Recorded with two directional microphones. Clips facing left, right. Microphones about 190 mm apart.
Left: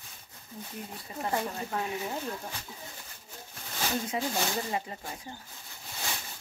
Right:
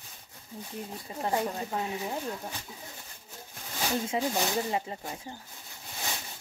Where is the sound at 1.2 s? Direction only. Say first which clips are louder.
Right 2 dB; 20° right (ahead or behind).